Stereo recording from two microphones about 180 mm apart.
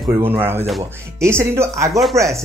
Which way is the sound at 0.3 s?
10° right (ahead or behind).